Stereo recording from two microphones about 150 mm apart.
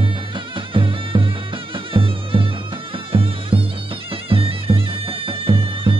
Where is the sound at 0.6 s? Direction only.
35° right (ahead or behind).